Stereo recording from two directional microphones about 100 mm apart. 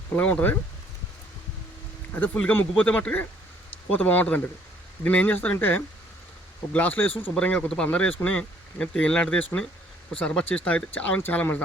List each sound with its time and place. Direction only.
0.2 s speech: 15° left (ahead or behind)
2.1 s speech: 15° left (ahead or behind)